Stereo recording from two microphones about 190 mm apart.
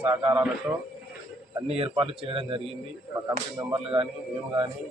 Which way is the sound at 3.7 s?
30° right (ahead or behind).